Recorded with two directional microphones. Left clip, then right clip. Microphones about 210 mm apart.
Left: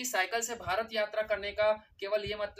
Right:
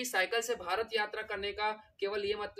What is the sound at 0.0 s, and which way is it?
Speech, centre (ahead or behind).